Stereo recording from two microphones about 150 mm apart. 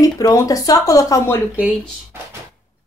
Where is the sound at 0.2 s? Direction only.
20° left (ahead or behind).